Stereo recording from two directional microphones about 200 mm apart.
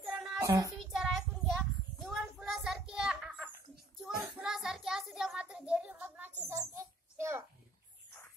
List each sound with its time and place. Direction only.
0.0 s child singing: 5° right (ahead or behind)
0.4 s speech: 15° right (ahead or behind)
0.9 s child singing: centre (ahead or behind)
4.0 s a sound: centre (ahead or behind)